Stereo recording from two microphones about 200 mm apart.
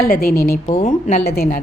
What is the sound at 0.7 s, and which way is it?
Speech, 35° left (ahead or behind).